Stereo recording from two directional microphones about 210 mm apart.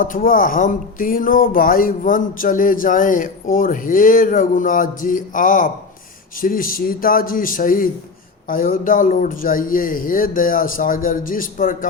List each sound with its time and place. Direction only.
0.0 s a man's voice: 40° left (ahead or behind)